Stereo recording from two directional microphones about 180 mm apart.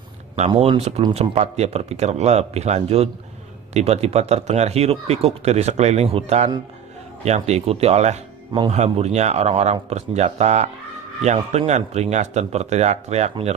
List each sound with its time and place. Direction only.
0.5 s speech: 35° right (ahead or behind)